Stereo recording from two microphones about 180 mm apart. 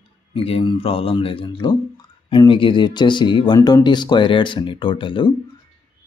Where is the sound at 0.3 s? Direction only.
30° left (ahead or behind).